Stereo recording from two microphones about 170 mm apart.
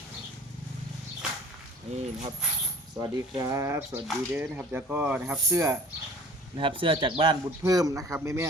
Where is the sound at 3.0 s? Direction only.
20° right (ahead or behind).